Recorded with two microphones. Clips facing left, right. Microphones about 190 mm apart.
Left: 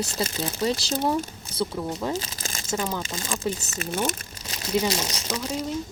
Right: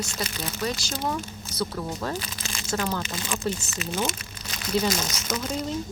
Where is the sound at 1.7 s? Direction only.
20° left (ahead or behind).